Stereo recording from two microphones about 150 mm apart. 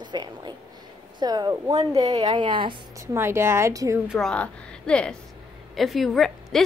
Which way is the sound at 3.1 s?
15° right (ahead or behind).